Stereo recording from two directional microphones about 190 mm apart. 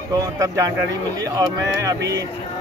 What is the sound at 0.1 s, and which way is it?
Speech, 20° right (ahead or behind).